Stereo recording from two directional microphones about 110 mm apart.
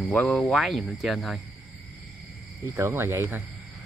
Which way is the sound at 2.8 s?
20° right (ahead or behind).